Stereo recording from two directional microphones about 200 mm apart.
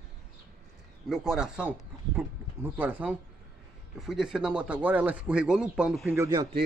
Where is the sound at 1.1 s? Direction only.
Centre (ahead or behind).